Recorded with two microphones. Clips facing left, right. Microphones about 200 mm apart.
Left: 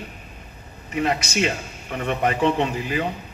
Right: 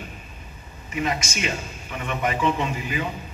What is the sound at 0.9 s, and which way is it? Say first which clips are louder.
A man's voice: left 4 dB; 65° left (ahead or behind).